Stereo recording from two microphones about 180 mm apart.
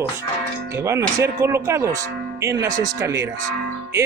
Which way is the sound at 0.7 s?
15° right (ahead or behind).